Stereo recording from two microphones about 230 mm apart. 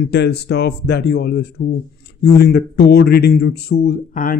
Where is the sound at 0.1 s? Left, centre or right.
Left.